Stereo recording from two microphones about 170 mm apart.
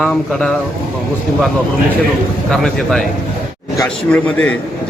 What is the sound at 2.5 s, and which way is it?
A man's voice, centre (ahead or behind).